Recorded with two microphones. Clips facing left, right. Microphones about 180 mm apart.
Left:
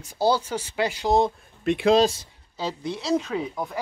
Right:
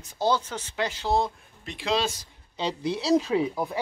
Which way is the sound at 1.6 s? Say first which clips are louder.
Left 9 dB; 55° left (ahead or behind).